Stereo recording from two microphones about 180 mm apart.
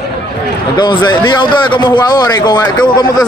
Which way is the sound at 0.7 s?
25° left (ahead or behind).